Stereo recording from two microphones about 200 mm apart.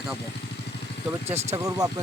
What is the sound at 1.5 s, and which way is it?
Speech, 15° right (ahead or behind).